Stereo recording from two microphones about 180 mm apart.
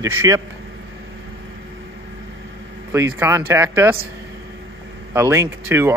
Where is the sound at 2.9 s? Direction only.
15° right (ahead or behind).